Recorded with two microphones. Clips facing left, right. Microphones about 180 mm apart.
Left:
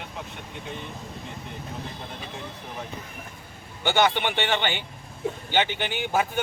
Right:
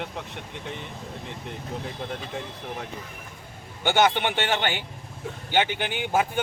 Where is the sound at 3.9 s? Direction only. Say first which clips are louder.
Right 1 dB; 15° right (ahead or behind).